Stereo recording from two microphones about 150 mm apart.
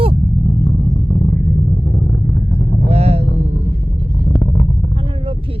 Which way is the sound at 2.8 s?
45° right (ahead or behind).